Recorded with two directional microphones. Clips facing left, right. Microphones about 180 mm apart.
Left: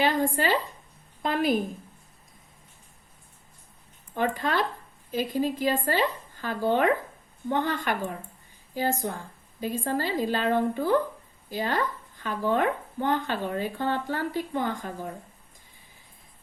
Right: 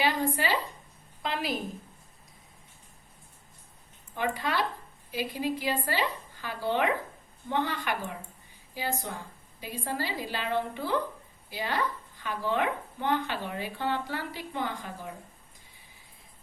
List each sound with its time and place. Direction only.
0.0 s speech: 45° left (ahead or behind)
4.2 s a woman's voice: 50° left (ahead or behind)